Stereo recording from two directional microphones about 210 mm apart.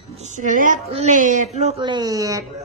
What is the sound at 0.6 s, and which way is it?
A man's voice, 35° right (ahead or behind).